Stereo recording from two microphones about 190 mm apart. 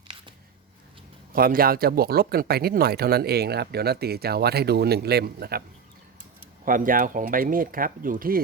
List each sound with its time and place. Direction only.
1.3 s speech: 50° right (ahead or behind)
6.7 s speech: 45° right (ahead or behind)